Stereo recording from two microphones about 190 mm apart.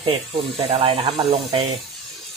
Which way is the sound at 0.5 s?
30° right (ahead or behind).